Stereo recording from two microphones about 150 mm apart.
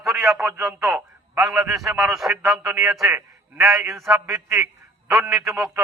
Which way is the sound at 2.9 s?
Centre (ahead or behind).